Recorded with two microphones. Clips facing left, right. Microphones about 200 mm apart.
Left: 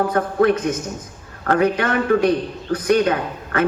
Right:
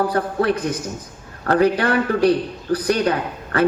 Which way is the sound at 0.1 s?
35° right (ahead or behind).